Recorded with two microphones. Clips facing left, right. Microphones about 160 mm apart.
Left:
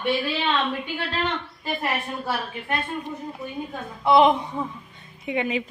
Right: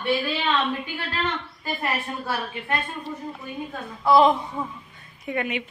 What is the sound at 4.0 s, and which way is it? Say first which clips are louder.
A woman's voice: even; 25° left (ahead or behind).